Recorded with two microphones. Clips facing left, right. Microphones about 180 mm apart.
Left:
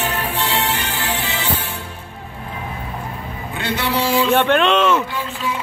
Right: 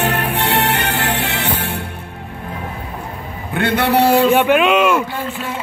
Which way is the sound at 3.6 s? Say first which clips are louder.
Right 7 dB; 55° right (ahead or behind).